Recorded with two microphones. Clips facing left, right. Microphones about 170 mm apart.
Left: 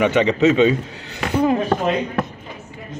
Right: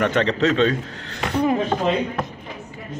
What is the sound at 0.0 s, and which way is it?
Speech, 5° left (ahead or behind).